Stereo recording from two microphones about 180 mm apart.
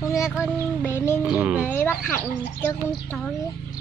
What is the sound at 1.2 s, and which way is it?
Speech, 10° right (ahead or behind).